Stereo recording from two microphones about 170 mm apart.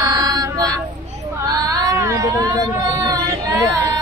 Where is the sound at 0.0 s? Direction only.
25° right (ahead or behind).